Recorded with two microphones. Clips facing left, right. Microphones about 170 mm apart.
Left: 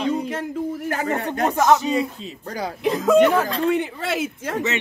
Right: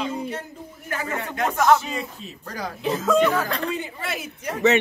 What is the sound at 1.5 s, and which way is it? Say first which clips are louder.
Speech: left 1 dB; 20° left (ahead or behind).